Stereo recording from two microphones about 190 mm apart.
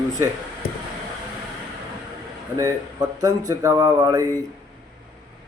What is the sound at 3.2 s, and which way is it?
Speech, 20° right (ahead or behind).